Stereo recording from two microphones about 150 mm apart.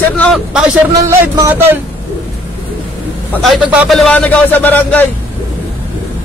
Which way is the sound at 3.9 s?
5° left (ahead or behind).